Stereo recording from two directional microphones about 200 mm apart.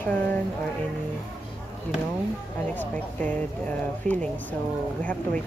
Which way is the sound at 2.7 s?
10° left (ahead or behind).